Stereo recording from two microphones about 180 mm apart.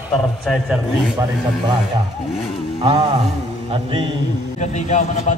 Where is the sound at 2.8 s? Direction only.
30° right (ahead or behind).